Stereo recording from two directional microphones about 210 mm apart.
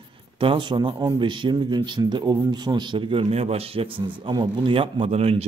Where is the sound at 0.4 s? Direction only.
25° right (ahead or behind).